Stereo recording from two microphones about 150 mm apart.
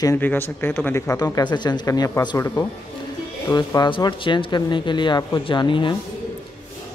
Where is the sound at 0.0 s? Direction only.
15° left (ahead or behind); by 5.9 s 30° left (ahead or behind).